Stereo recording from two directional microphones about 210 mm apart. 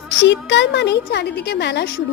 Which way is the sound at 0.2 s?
60° left (ahead or behind).